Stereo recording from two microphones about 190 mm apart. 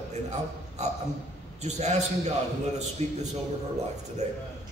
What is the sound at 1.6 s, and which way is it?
A man's voice, 35° right (ahead or behind).